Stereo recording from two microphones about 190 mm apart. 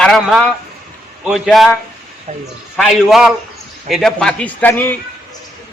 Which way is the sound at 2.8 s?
Centre (ahead or behind).